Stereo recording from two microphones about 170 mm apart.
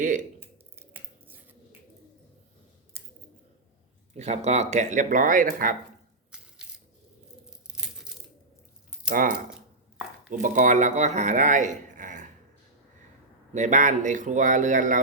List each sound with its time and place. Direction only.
0.0 s speech: 50° right (ahead or behind)
0.3 s drip: 10° right (ahead or behind)
4.2 s speech: 40° right (ahead or behind)
6.3 s crushing: 5° right (ahead or behind)
7.4 s crunch: 5° right (ahead or behind)
9.0 s speech: 55° right (ahead or behind)
10.3 s speech: 45° right (ahead or behind)
13.5 s speech: 45° right (ahead or behind)